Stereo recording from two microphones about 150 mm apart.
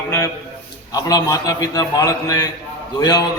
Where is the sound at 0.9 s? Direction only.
25° left (ahead or behind).